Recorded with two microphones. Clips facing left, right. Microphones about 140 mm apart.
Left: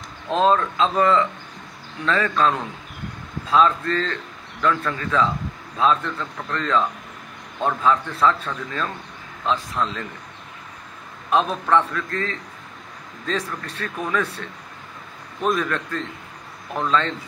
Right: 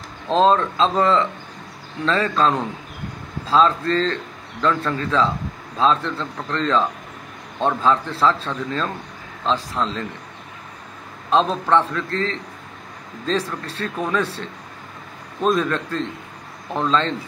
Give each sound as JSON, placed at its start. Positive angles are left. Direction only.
{"t": 0.3, "sound": "a man's voice", "side_deg": -30}
{"t": 11.2, "sound": "a man's voice", "side_deg": -25}